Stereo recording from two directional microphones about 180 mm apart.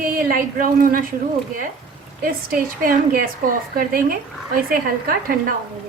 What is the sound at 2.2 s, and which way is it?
A woman's voice, 50° right (ahead or behind).